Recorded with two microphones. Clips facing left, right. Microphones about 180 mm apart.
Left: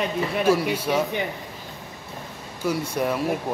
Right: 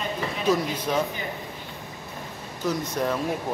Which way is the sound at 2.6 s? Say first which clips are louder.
Left 2 dB; 10° left (ahead or behind).